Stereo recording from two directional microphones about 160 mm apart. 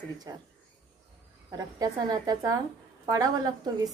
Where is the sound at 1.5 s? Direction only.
25° right (ahead or behind).